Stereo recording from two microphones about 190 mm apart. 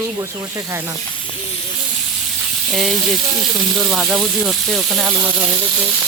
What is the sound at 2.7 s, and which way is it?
Speech, centre (ahead or behind).